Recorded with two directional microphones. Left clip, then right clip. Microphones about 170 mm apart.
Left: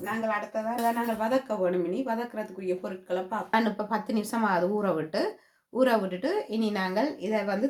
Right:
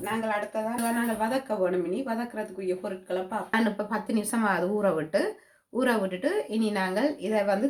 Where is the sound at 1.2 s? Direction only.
25° left (ahead or behind).